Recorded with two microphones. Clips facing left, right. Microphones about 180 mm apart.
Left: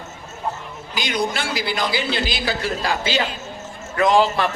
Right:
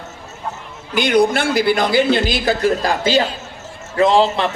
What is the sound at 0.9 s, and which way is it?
A woman's voice, 60° right (ahead or behind).